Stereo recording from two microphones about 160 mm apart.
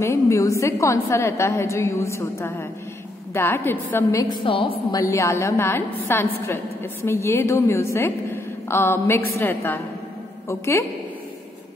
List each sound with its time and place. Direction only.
0.0 s a woman's voice: 20° left (ahead or behind)
4.5 s a woman's voice: 35° left (ahead or behind)
4.9 s a woman's voice: 20° left (ahead or behind)